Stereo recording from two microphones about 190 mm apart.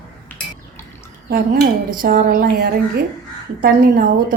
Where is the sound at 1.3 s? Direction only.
50° right (ahead or behind).